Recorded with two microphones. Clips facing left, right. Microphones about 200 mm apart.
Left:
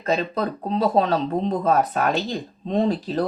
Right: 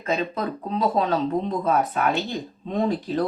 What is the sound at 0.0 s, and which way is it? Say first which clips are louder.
Speech: left 2 dB; 40° left (ahead or behind).